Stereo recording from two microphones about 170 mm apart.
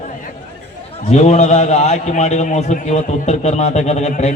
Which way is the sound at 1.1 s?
40° left (ahead or behind).